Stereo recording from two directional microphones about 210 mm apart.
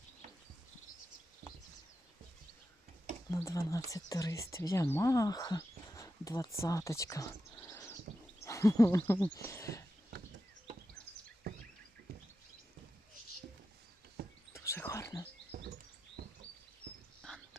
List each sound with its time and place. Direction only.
3.3 s speech: 15° left (ahead or behind)
11.5 s a sound: 50° right (ahead or behind)
14.2 s a sound: 50° right (ahead or behind)
14.5 s whispering: 15° left (ahead or behind)
15.5 s patter: 50° right (ahead or behind)
17.2 s dog: 5° left (ahead or behind)